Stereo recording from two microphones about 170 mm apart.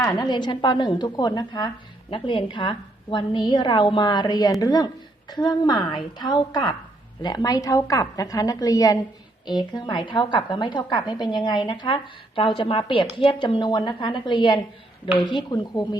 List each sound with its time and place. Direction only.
0.2 s a woman's voice: 25° left (ahead or behind)